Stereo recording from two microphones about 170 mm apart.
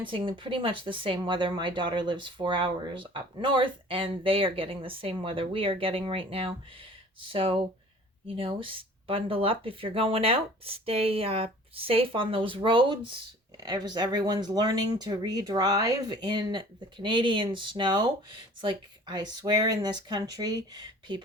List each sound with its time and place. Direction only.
0.0 s speech: 30° right (ahead or behind)